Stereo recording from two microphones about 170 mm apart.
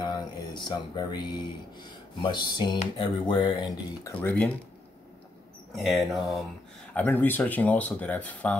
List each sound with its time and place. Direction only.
0.0 s a sound: 25° left (ahead or behind)
1.8 s speech: 25° left (ahead or behind); by 4.6 s 10° left (ahead or behind)
5.7 s speech: centre (ahead or behind)